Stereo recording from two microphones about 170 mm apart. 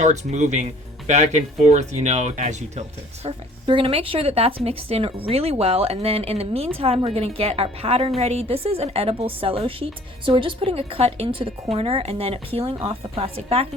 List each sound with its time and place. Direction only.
0.0 s speech: 45° right (ahead or behind)
3.2 s a woman's voice: 30° right (ahead or behind)